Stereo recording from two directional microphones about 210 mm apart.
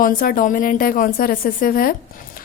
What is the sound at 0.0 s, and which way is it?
Speech, 40° left (ahead or behind).